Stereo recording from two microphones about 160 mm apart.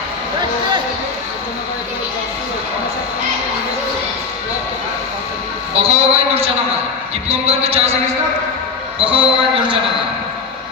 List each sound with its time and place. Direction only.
5.8 s a sound: 40° right (ahead or behind)
7.3 s speech: 40° right (ahead or behind)
9.0 s speech: 35° right (ahead or behind)